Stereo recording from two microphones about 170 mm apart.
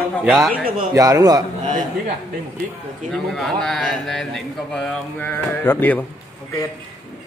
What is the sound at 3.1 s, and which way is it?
A man's voice, centre (ahead or behind).